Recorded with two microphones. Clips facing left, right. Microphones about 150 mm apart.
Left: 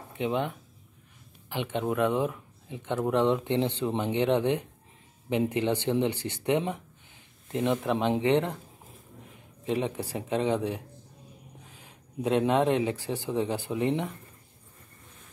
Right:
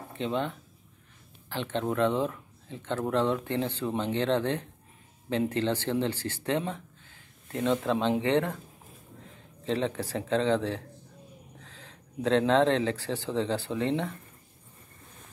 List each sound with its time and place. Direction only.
0.2 s speech: 15° left (ahead or behind)
9.7 s speech: 15° left (ahead or behind)